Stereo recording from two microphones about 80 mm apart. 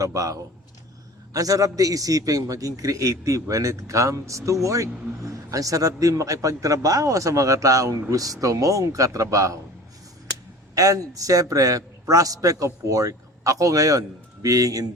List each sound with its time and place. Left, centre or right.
0.0 s a man's voice: right
10.8 s a man's voice: right